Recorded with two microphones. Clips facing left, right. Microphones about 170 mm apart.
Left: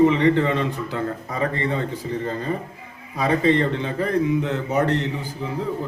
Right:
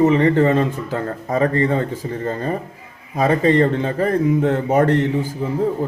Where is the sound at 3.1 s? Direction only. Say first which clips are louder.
Right 4 dB; 45° right (ahead or behind).